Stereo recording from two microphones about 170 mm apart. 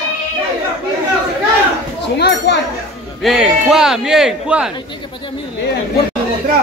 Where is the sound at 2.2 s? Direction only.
85° left.